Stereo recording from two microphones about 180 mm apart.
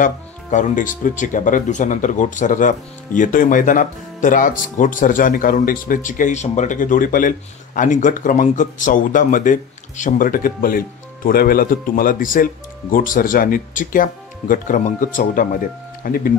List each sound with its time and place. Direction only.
0.0 s speech: 45° left (ahead or behind)